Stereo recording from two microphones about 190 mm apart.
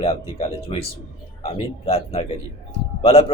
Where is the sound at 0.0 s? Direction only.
30° left (ahead or behind).